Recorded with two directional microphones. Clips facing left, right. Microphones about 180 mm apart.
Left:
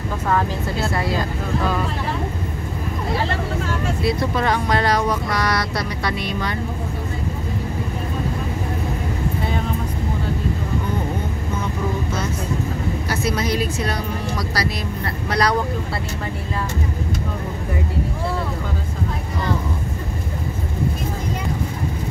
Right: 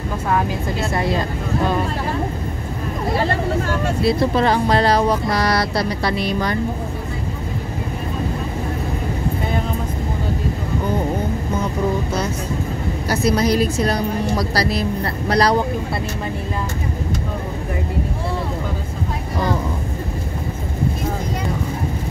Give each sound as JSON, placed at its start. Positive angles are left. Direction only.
{"t": 4.0, "sound": "speech", "side_deg": -30}
{"t": 13.1, "sound": "speech", "side_deg": -40}